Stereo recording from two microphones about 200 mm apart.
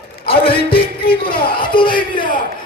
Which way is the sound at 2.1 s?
45° left (ahead or behind).